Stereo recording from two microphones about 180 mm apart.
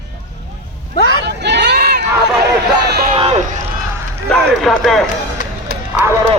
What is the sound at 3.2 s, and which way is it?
Run, 35° right (ahead or behind).